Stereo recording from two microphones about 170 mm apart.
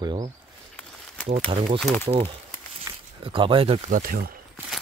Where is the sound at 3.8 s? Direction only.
50° right (ahead or behind).